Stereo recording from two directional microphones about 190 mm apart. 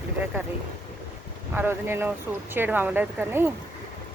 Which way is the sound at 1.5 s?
10° right (ahead or behind).